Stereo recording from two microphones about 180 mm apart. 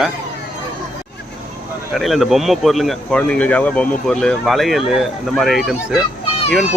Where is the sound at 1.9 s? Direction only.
Centre (ahead or behind).